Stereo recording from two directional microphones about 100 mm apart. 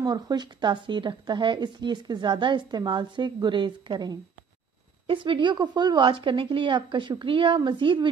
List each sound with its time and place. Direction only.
0.0 s a woman's voice: 45° right (ahead or behind)